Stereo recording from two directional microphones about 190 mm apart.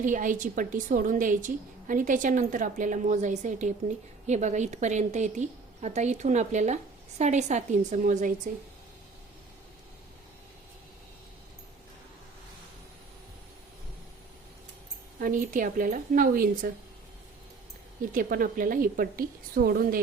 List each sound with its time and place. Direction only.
0.0 s a woman's voice: 40° right (ahead or behind)
15.2 s a woman's voice: 45° right (ahead or behind)
18.1 s a woman's voice: 50° right (ahead or behind)